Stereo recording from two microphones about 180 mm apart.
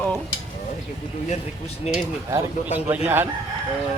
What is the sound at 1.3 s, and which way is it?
Speech, 35° left (ahead or behind).